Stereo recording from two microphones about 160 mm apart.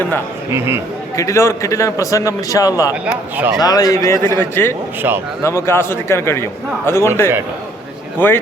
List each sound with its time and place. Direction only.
0.5 s speech: 15° right (ahead or behind)
1.1 s a man's voice: 20° left (ahead or behind)
2.9 s speech: 10° right (ahead or behind)
3.6 s a man's voice: 25° left (ahead or behind)
5.0 s speech: 15° right (ahead or behind)
5.4 s a man's voice: 15° left (ahead or behind)
8.2 s a man's voice: 10° left (ahead or behind)